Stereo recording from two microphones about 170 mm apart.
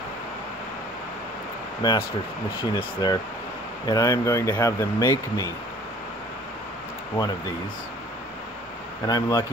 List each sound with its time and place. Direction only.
1.8 s speech: 25° left (ahead or behind)
9.0 s speech: 25° left (ahead or behind)